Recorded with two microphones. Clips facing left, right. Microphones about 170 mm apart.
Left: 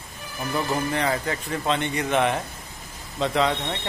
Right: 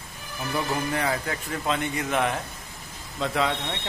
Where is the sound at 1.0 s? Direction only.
Centre (ahead or behind).